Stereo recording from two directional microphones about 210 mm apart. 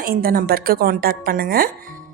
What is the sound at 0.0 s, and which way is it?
A woman's voice, 45° right (ahead or behind).